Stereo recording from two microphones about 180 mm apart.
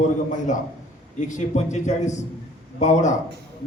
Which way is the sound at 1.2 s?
45° left (ahead or behind).